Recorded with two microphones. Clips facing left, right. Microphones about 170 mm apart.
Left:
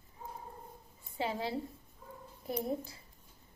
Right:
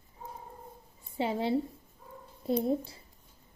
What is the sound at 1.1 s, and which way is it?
A woman's voice, 25° right (ahead or behind).